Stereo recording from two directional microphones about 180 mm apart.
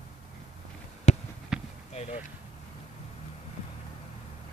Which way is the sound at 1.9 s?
35° left (ahead or behind).